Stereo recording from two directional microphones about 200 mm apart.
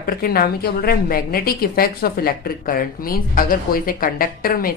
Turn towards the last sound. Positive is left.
turn(degrees=45)  # may be behind; listen again after turning